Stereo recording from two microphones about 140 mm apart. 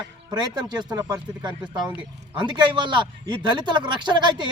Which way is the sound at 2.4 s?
35° right (ahead or behind).